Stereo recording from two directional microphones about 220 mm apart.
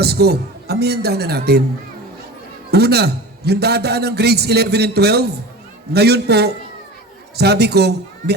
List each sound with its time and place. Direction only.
0.0 s a man's voice: 45° right (ahead or behind)
2.6 s a man's voice: 45° right (ahead or behind)